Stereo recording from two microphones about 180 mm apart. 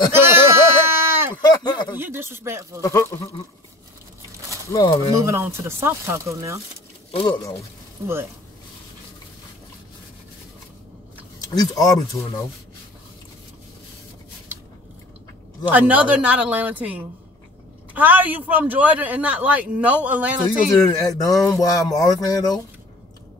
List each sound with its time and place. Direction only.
0.1 s a sound: 15° right (ahead or behind)
1.4 s a sound: 25° left (ahead or behind)
2.0 s speech: 10° right (ahead or behind)
2.8 s speech: 20° left (ahead or behind)
4.6 s speech: 20° left (ahead or behind)
5.3 s speech: 15° right (ahead or behind)
7.1 s speech: 25° left (ahead or behind)
8.0 s speech: 15° right (ahead or behind)
11.5 s speech: 20° left (ahead or behind)
15.7 s speech: 10° right (ahead or behind)
20.7 s speech: 20° left (ahead or behind)